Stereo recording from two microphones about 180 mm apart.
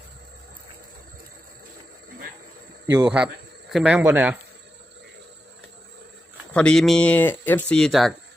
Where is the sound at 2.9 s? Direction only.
10° right (ahead or behind).